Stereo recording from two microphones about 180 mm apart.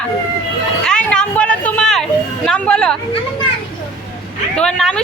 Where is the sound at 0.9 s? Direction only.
5° left (ahead or behind).